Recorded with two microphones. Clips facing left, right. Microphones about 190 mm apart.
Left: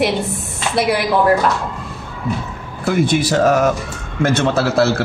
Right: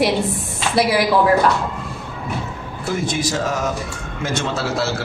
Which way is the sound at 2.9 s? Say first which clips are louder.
Left 6 dB; 60° left (ahead or behind).